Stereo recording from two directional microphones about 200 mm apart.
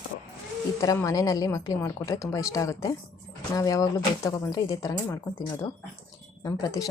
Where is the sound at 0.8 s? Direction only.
15° left (ahead or behind).